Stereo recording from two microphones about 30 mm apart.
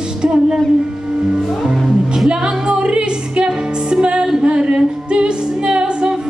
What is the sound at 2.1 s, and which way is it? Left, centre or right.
Music, right.